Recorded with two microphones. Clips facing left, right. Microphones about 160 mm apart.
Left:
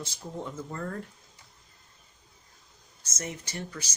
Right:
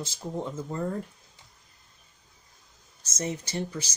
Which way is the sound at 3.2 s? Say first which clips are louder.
Right 6 dB; 20° right (ahead or behind).